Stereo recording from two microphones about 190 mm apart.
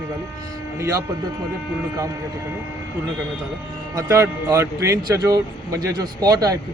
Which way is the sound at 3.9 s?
15° right (ahead or behind).